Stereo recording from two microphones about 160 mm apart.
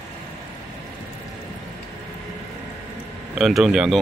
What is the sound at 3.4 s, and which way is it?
Speech, centre (ahead or behind).